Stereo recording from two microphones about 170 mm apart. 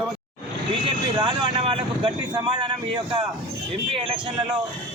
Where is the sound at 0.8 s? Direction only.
30° right (ahead or behind).